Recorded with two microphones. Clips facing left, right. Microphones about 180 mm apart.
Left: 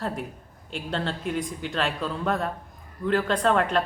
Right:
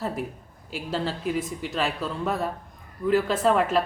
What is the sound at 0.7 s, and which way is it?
Speech, 5° right (ahead or behind).